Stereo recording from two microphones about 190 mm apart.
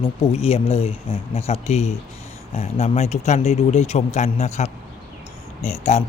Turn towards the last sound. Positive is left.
turn(degrees=35)  # may be behind; listen again after turning